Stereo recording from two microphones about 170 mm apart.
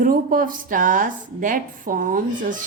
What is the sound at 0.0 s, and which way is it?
A woman's voice, 55° right (ahead or behind).